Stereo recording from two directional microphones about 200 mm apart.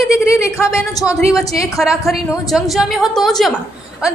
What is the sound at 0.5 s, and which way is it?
Speech, 15° left (ahead or behind).